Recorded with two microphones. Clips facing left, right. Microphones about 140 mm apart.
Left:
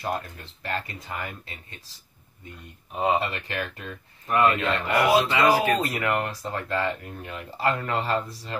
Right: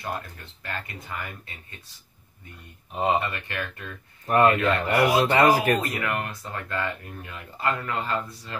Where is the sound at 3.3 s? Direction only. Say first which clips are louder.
Left 2 dB; 25° left (ahead or behind).